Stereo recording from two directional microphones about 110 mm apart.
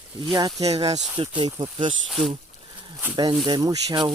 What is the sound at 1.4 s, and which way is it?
Speech, 45° right (ahead or behind).